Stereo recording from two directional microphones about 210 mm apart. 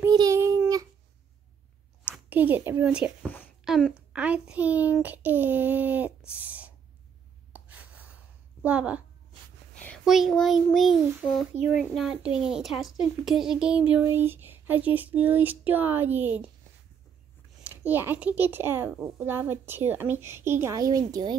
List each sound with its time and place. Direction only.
0.0 s child singing: 15° right (ahead or behind)
2.2 s a woman's voice: 10° right (ahead or behind)
6.4 s gasp: 5° right (ahead or behind)
8.6 s a woman's voice: 5° right (ahead or behind)
9.8 s child singing: 5° left (ahead or behind)
11.8 s a woman's voice: centre (ahead or behind)
17.6 s a woman's voice: 10° right (ahead or behind)